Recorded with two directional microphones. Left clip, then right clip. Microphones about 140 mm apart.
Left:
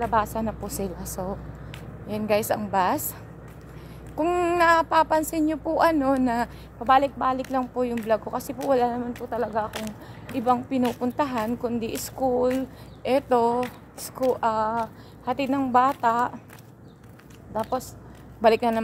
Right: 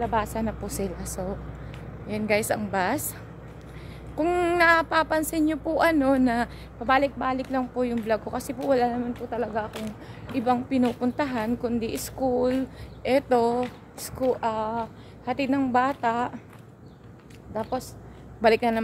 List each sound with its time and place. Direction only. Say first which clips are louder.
0.0 s a woman's voice: left 2 dB; 5° right (ahead or behind)
4.1 s a woman's voice: left 1 dB; 10° right (ahead or behind)
17.6 s a woman's voice: left 2 dB; centre (ahead or behind)